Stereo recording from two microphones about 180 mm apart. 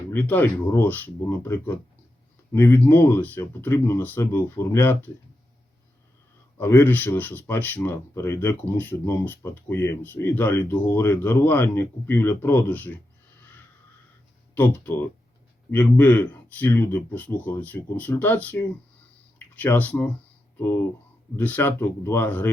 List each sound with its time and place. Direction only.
0.1 s speech: 10° left (ahead or behind)
6.6 s speech: 10° left (ahead or behind)
14.5 s speech: 10° left (ahead or behind)
21.3 s speech: 10° left (ahead or behind)